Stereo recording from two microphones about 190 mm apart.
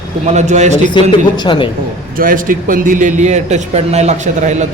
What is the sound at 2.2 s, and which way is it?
A man's voice, 45° right (ahead or behind).